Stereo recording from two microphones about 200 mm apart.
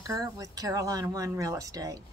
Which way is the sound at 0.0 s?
15° right (ahead or behind).